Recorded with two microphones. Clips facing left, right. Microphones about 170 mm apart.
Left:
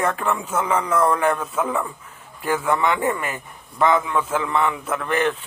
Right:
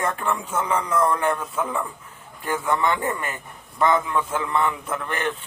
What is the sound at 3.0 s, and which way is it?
Speech, 30° left (ahead or behind).